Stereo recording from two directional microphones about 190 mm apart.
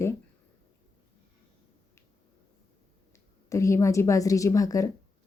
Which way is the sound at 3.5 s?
15° left (ahead or behind).